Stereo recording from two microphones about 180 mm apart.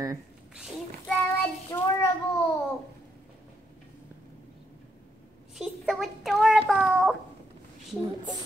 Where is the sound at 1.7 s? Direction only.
20° left (ahead or behind).